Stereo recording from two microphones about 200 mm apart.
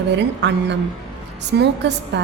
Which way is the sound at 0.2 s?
60° right (ahead or behind).